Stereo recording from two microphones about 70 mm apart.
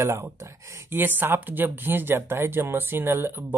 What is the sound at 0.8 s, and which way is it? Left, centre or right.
Speech, right.